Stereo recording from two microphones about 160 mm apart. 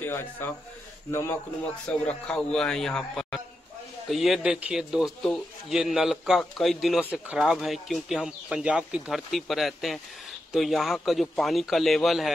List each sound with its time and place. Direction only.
0.0 s speech: 10° left (ahead or behind)
1.9 s a man's voice: 5° left (ahead or behind)